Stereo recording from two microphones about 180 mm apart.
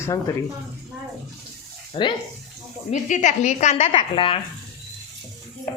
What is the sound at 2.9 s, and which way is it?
A woman's voice, 40° left (ahead or behind).